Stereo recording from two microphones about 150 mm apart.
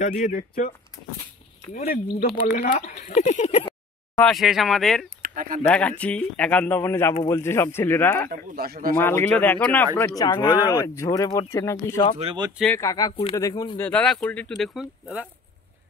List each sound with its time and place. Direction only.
0.2 s speech: 55° left (ahead or behind)
2.1 s speech: 90° left
2.6 s speech: 60° left (ahead or behind)
4.3 s speech: centre (ahead or behind)
5.2 s a sound: 65° right (ahead or behind)
5.6 s speech: 10° left (ahead or behind)
8.5 s speech: 90° right
8.9 s speech: 15° left (ahead or behind)
10.1 s speech: 25° left (ahead or behind)
12.2 s speech: 30° right (ahead or behind)
12.8 s speech: 25° left (ahead or behind)
13.1 s speech: 35° left (ahead or behind)
13.4 s speech: 25° left (ahead or behind)
13.7 s speech: 10° left (ahead or behind)